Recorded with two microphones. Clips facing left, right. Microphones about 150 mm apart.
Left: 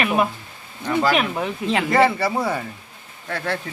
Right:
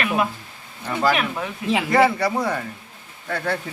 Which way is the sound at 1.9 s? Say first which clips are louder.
Even; centre (ahead or behind).